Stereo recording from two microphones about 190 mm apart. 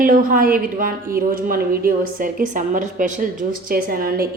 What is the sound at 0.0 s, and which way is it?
Speech, 45° right (ahead or behind).